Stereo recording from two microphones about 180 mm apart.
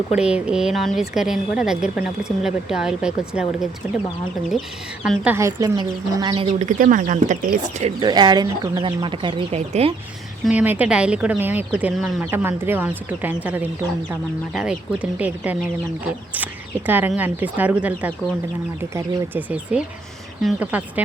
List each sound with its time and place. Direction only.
0.2 s a woman's voice: 5° right (ahead or behind)
5.0 s speech: 10° right (ahead or behind); by 7.9 s 40° right (ahead or behind)
8.0 s speech: 25° right (ahead or behind)
10.4 s speech: 10° right (ahead or behind)
12.2 s speech: 15° right (ahead or behind)